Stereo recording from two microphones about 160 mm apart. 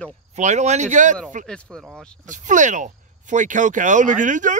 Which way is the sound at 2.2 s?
50° right (ahead or behind).